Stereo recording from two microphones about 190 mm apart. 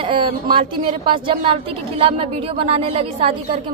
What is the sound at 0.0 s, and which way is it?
A woman's voice, 25° right (ahead or behind).